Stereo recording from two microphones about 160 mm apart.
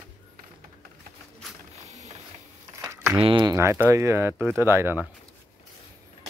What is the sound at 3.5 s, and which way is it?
Speech, 15° right (ahead or behind).